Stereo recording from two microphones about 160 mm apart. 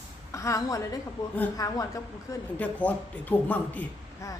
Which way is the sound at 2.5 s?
10° left (ahead or behind).